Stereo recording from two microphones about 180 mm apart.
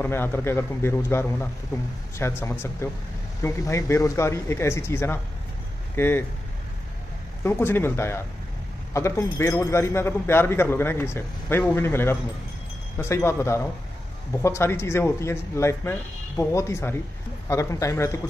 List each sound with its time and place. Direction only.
0.0 s a man's voice: 10° left (ahead or behind)
7.4 s a man's voice: 10° left (ahead or behind)